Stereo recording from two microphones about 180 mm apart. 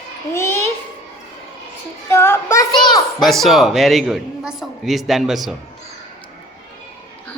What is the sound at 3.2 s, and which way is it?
A man's voice, centre (ahead or behind).